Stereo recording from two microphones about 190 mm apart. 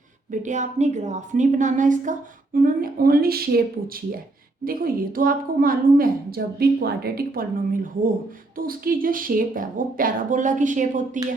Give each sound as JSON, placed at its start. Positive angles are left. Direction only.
{"t": 0.3, "sound": "a woman's voice", "side_deg": -40}